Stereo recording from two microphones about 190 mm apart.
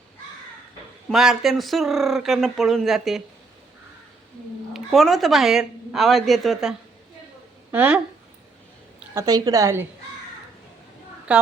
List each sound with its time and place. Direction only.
1.1 s speech: centre (ahead or behind)
4.7 s speech: centre (ahead or behind)
9.0 s a woman's voice: 15° right (ahead or behind)
11.3 s a woman's voice: 5° right (ahead or behind)